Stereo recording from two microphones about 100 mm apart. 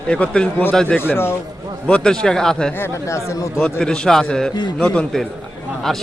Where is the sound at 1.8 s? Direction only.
10° left (ahead or behind).